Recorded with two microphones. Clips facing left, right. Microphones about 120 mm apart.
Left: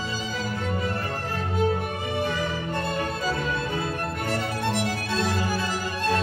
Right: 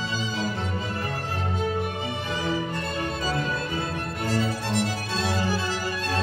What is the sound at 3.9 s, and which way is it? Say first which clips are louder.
Music: right 1 dB; 55° left (ahead or behind).